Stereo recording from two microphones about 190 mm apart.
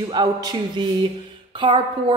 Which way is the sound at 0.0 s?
20° right (ahead or behind).